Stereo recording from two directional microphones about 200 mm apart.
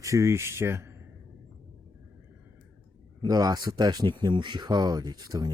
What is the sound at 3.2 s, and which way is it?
Speech, 20° right (ahead or behind).